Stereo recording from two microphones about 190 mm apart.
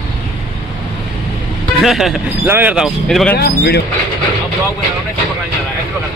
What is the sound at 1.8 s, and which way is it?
Speech, centre (ahead or behind).